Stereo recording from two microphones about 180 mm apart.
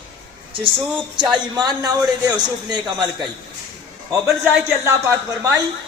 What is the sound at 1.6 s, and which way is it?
Speech, 25° right (ahead or behind).